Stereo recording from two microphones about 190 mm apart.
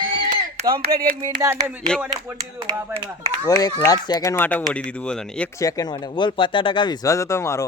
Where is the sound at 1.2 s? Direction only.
15° right (ahead or behind).